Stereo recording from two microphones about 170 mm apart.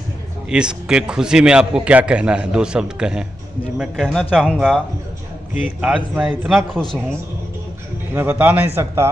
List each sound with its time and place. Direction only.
0.5 s a man's voice: 5° right (ahead or behind)
8.1 s a man's voice: 10° right (ahead or behind)